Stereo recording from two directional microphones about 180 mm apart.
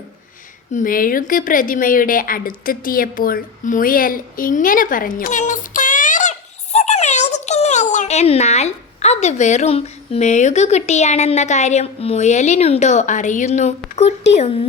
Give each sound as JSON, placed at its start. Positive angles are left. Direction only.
{"t": 0.7, "sound": "a woman's voice", "side_deg": 50}